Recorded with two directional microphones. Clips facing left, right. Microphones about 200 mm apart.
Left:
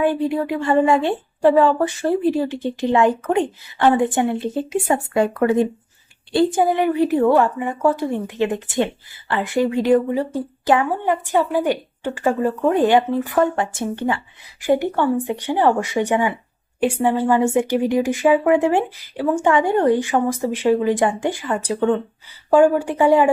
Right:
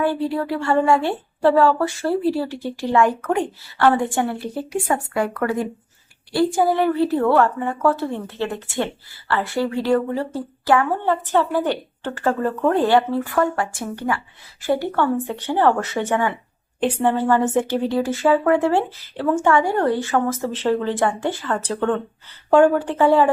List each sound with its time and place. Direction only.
0.0 s a woman's voice: 20° left (ahead or behind)